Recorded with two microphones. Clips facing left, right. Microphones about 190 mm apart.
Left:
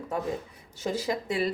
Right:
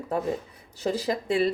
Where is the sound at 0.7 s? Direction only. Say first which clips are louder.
Right 2 dB; 35° right (ahead or behind).